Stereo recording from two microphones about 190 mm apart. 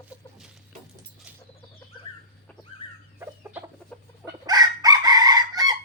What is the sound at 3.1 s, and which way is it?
Chicken, 10° right (ahead or behind).